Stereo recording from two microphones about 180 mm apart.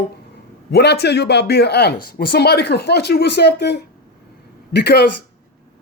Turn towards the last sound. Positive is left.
turn(degrees=65)  # may be behind; listen again after turning